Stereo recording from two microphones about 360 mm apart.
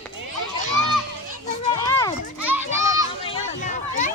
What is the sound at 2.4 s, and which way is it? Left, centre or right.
Children playing, centre.